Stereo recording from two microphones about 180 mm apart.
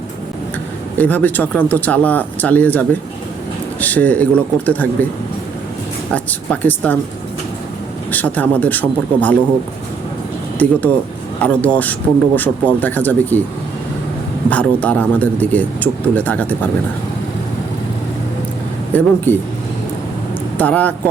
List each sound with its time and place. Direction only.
0.9 s speech: 10° left (ahead or behind)
6.1 s speech: 10° left (ahead or behind)
8.1 s speech: 10° left (ahead or behind)
10.6 s speech: 10° left (ahead or behind)
14.5 s speech: 10° left (ahead or behind)
18.9 s speech: 10° left (ahead or behind)
20.6 s speech: 10° left (ahead or behind)